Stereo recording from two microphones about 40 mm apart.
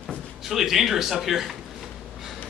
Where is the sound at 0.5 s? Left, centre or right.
Centre.